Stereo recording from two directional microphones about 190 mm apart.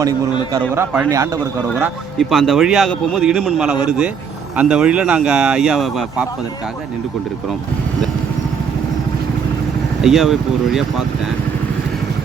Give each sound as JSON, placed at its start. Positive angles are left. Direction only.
{"t": 0.7, "sound": "a man's voice", "side_deg": -15}
{"t": 2.1, "sound": "speech", "side_deg": 0}
{"t": 10.0, "sound": "speech", "side_deg": 0}